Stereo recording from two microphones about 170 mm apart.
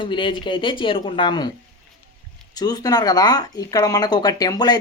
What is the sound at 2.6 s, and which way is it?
Speech, 25° left (ahead or behind).